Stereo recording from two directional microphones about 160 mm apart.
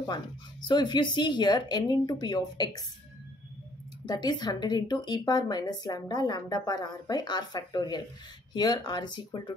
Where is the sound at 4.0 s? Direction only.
25° left (ahead or behind).